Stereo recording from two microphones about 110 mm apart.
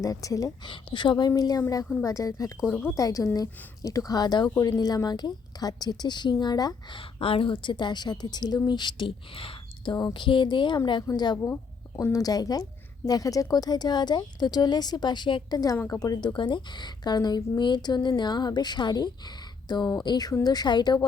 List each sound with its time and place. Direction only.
0.0 s speech: 30° left (ahead or behind)
0.6 s speech: 45° left (ahead or behind); by 2.5 s 30° left (ahead or behind)
2.6 s speech: 10° left (ahead or behind)
2.9 s speech: 30° left (ahead or behind)
7.2 s speech: 55° left (ahead or behind)
9.9 s speech: 45° left (ahead or behind)
12.1 s speech: 35° left (ahead or behind)
16.3 s speech: 45° left (ahead or behind)